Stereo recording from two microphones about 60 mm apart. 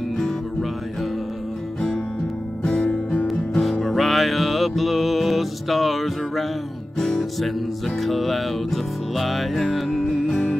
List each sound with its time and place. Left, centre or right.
2.6 s music: centre
3.8 s music: centre